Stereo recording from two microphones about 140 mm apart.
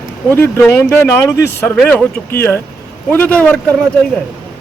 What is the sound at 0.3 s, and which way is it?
Speech, 15° left (ahead or behind).